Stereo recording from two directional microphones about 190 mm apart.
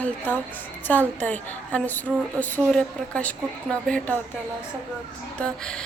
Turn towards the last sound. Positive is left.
turn(degrees=5)  # may be behind; listen again after turning